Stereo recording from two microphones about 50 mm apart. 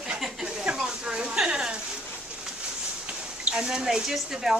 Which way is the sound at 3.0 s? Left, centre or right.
Centre.